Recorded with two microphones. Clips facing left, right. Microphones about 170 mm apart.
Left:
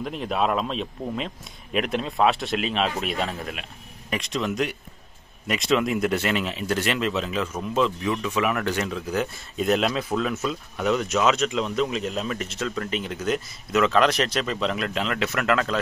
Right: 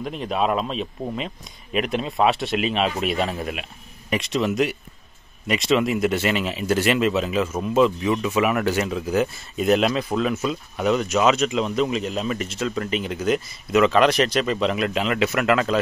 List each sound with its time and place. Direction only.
0.0 s speech: centre (ahead or behind)